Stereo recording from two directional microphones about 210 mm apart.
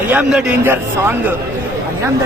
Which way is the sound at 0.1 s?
5° right (ahead or behind).